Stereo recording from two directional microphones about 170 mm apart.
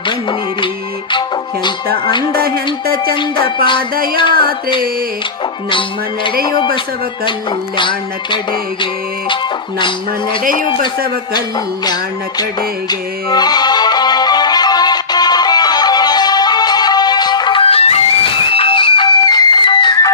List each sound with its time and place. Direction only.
0.1 s music: 30° left (ahead or behind)
2.8 s music: 65° right (ahead or behind)
4.2 s speech: 25° left (ahead or behind)
7.8 s speech: 30° left (ahead or behind)
12.9 s music: 25° left (ahead or behind)